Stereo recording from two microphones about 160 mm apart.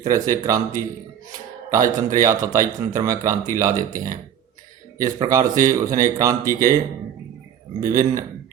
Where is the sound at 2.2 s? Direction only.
20° right (ahead or behind).